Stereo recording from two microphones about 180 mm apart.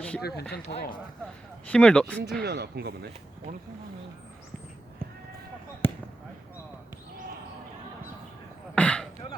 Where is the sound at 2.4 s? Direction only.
65° right (ahead or behind).